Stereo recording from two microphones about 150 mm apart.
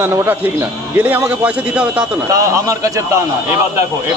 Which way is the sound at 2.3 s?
20° right (ahead or behind).